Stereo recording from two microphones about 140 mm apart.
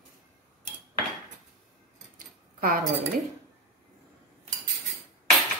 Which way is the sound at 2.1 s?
90° right.